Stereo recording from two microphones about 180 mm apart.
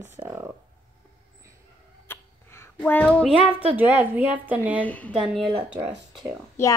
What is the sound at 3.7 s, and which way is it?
A woman's voice, 10° right (ahead or behind).